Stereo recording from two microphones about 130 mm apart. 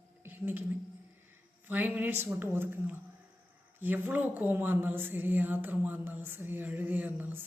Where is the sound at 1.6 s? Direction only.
15° right (ahead or behind).